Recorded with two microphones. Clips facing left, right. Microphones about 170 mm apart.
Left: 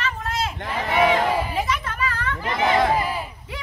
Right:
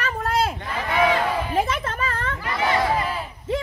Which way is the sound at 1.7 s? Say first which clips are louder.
Even; 30° right (ahead or behind).